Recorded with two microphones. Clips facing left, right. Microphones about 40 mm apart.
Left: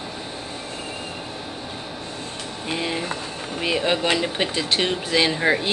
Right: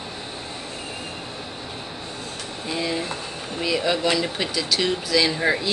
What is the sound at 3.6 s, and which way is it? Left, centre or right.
Speech, left.